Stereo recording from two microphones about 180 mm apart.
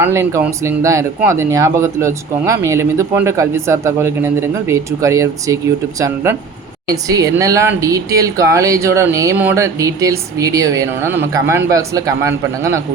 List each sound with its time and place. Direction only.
0.0 s speech: 15° right (ahead or behind)
6.8 s speech: 20° right (ahead or behind)